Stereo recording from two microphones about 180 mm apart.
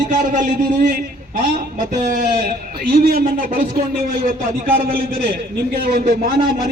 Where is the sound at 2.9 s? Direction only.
55° right (ahead or behind).